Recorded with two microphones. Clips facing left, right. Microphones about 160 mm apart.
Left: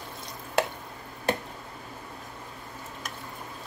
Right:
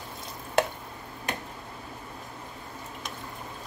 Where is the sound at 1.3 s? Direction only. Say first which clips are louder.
Left 7 dB; 35° left (ahead or behind).